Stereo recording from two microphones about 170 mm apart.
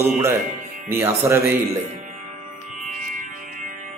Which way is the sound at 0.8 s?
15° right (ahead or behind).